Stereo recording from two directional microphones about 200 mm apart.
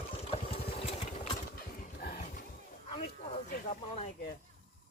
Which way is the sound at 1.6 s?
45° left (ahead or behind).